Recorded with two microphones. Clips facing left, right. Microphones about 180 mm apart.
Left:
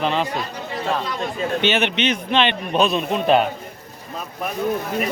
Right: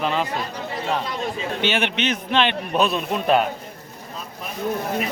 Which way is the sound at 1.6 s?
10° right (ahead or behind).